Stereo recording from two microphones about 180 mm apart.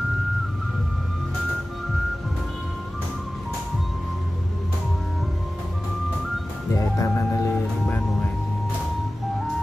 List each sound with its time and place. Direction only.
7.0 s music: 15° left (ahead or behind)